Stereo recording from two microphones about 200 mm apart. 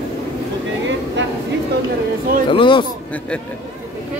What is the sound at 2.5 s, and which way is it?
Speech, 25° left (ahead or behind).